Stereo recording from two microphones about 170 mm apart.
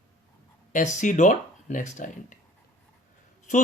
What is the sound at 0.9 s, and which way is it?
A man's voice, 45° left (ahead or behind).